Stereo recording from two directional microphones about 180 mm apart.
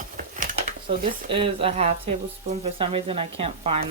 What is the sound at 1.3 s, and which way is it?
Speech, 30° right (ahead or behind).